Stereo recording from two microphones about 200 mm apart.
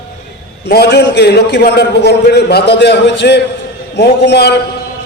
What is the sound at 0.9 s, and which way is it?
A man's voice, 60° left (ahead or behind).